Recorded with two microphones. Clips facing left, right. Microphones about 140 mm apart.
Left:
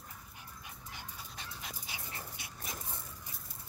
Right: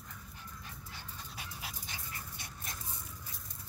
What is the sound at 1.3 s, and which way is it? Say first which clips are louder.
Dog: right 3 dB; 5° right (ahead or behind).